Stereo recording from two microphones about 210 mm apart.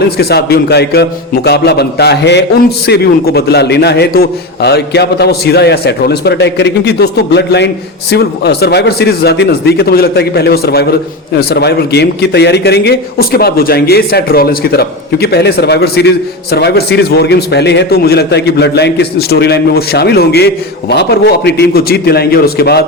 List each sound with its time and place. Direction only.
0.2 s a man's voice: 50° left (ahead or behind)